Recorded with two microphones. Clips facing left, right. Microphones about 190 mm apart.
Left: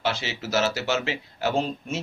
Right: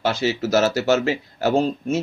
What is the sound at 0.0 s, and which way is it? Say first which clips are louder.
A man's voice: right 7 dB; 40° right (ahead or behind).